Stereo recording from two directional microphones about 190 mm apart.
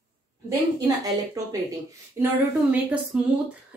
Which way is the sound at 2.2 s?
10° right (ahead or behind).